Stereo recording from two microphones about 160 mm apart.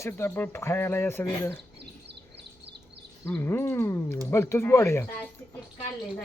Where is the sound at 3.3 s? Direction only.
15° left (ahead or behind).